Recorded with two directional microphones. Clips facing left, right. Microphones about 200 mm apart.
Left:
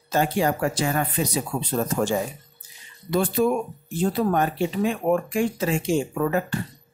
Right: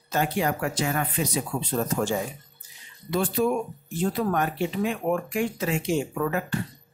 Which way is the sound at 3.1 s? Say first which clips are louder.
Left 3 dB; 40° left (ahead or behind).